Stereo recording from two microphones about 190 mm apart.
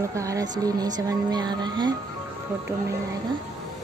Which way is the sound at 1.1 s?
20° right (ahead or behind).